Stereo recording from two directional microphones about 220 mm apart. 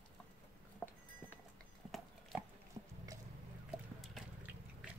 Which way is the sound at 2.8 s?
20° right (ahead or behind).